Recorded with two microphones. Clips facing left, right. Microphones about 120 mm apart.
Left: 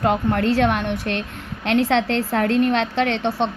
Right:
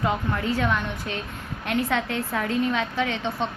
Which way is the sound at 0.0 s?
60° left (ahead or behind).